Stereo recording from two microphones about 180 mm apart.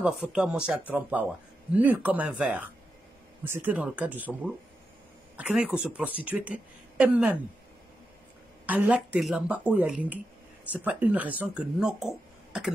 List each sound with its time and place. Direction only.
0.0 s speech: 5° right (ahead or behind)
8.6 s speech: 10° right (ahead or behind)